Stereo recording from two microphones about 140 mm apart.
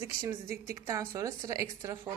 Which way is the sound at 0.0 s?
20° right (ahead or behind).